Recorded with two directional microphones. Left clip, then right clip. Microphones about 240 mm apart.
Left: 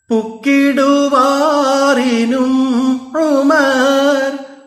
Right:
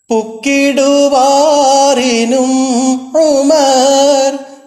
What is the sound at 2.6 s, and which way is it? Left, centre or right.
Music, right.